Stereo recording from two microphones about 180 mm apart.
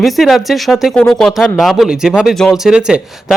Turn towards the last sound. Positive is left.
turn(degrees=-5)  # may be behind; listen again after turning